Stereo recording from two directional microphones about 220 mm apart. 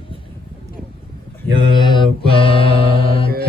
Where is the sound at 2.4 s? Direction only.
25° left (ahead or behind).